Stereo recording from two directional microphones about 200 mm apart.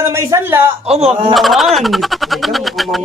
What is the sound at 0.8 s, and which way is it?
Speech, 30° right (ahead or behind).